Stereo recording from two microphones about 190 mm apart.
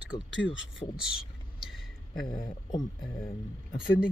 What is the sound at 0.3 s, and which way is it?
Speech, 75° left (ahead or behind).